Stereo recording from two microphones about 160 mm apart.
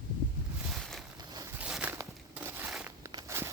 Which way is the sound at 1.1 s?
25° right (ahead or behind).